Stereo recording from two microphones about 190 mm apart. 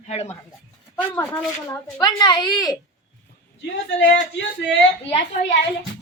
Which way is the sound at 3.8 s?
70° left (ahead or behind).